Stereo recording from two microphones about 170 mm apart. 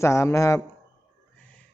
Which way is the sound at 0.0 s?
15° left (ahead or behind).